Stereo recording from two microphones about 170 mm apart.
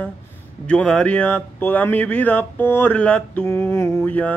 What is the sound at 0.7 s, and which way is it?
Speech, 5° left (ahead or behind).